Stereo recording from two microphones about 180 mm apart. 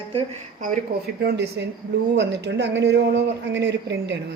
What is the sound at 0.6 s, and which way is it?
A woman's voice, 55° right (ahead or behind).